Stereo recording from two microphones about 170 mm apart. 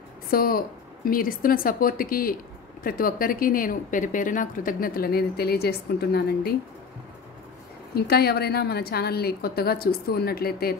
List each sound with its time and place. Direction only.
0.3 s speech: 60° left (ahead or behind)
7.9 s a woman's voice: 70° left (ahead or behind)